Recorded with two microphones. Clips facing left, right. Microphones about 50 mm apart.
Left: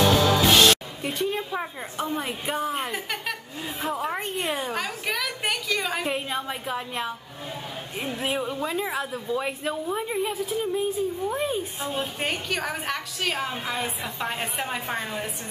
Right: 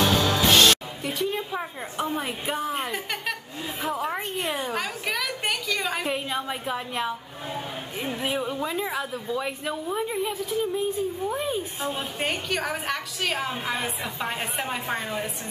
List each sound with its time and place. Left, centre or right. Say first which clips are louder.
0.0 s music: left 2 dB; centre
2.0 s a woman's voice: even; centre
8.2 s a woman's voice: even; centre